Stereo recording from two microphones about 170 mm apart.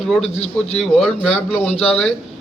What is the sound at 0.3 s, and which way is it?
Speech, 40° left (ahead or behind).